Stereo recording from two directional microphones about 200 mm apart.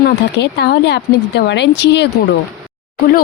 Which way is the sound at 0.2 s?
55° left (ahead or behind).